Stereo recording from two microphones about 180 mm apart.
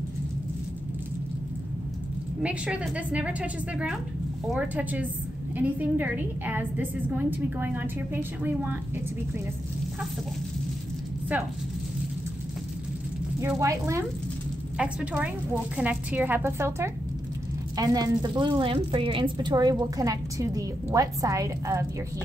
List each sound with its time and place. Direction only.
2.4 s a woman's voice: 5° right (ahead or behind)
13.4 s a woman's voice: 15° right (ahead or behind)